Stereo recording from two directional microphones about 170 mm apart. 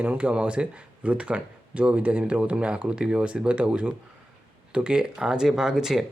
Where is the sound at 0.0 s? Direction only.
10° right (ahead or behind).